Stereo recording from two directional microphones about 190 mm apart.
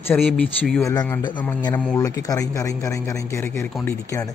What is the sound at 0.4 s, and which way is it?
Speech, 10° left (ahead or behind).